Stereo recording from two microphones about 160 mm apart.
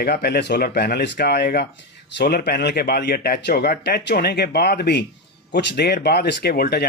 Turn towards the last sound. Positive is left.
turn(degrees=80)